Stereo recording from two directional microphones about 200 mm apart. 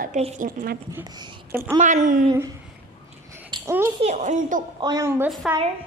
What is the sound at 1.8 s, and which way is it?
Speech, 40° right (ahead or behind).